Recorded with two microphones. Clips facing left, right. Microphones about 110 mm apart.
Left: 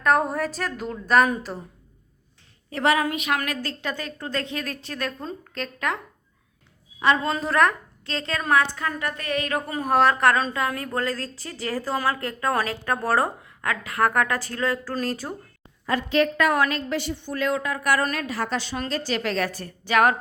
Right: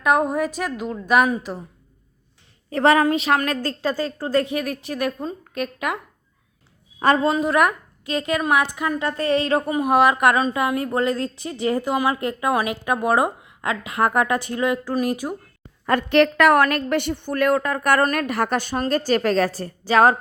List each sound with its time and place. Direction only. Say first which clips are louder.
0.0 s a woman's voice: right 2 dB; 10° right (ahead or behind)
2.6 s a woman's voice: right 5 dB; 35° right (ahead or behind)
4.4 s a woman's voice: right 6 dB; 15° right (ahead or behind)
7.0 s a woman's voice: right 3 dB; 45° right (ahead or behind)
7.3 s a woman's voice: right 2 dB; 10° right (ahead or behind); by 9.7 s 25° right (ahead or behind)
9.7 s a woman's voice: right 1 dB; 10° right (ahead or behind)
15.9 s a woman's voice: right 5 dB; 60° right (ahead or behind); by 20.1 s 30° right (ahead or behind)